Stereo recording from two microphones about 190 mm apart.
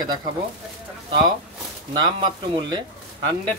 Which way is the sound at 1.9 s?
25° right (ahead or behind).